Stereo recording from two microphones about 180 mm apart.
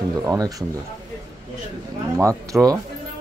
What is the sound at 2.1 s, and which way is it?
Speech, 15° right (ahead or behind).